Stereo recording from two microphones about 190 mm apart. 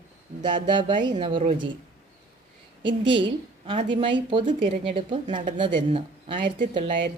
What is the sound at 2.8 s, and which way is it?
A woman's voice, 25° right (ahead or behind).